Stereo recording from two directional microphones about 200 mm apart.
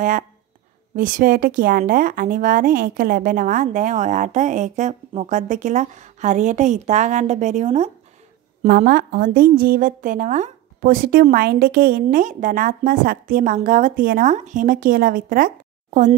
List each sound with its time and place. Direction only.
0.9 s a woman's voice: 45° right (ahead or behind)
8.6 s a woman's voice: 45° right (ahead or behind)